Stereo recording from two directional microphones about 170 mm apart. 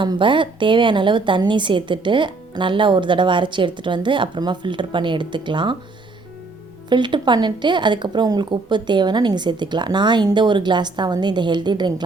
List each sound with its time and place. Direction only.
0.0 s a woman's voice: 30° right (ahead or behind)
6.9 s a woman's voice: 25° right (ahead or behind)